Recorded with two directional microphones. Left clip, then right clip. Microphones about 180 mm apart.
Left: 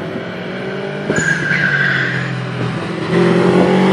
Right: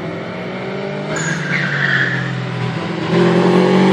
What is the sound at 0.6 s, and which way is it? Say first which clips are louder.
Vehicle: left 3 dB; 15° left (ahead or behind).